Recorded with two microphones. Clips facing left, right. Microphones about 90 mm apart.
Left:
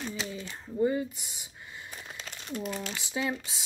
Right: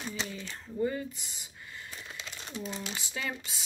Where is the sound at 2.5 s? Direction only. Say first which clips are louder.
Left 4 dB; 55° left (ahead or behind).